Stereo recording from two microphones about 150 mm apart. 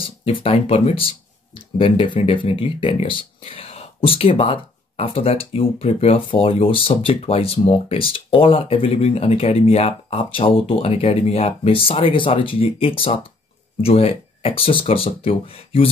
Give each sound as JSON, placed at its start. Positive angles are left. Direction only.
{"t": 0.0, "sound": "speech", "side_deg": 40}